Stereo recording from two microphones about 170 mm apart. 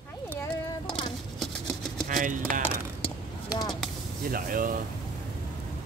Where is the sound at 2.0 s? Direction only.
50° right (ahead or behind).